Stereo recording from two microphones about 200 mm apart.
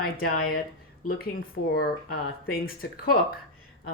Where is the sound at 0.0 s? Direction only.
45° left (ahead or behind).